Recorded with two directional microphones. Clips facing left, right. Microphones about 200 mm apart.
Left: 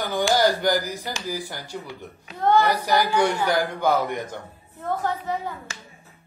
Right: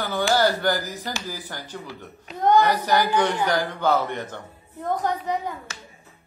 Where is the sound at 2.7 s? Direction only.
10° left (ahead or behind).